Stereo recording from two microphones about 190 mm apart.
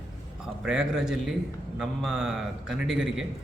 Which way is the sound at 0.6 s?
5° right (ahead or behind).